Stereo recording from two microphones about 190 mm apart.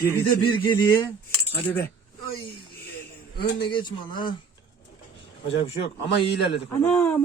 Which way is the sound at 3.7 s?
25° left (ahead or behind).